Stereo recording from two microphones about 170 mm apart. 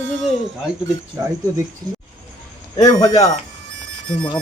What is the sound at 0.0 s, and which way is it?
Music, 90° right.